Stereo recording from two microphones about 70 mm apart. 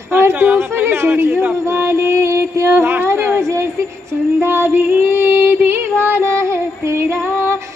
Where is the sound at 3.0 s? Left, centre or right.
Right.